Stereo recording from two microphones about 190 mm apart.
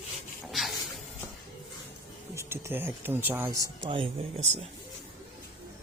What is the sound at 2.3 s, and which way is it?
Speech, 15° right (ahead or behind).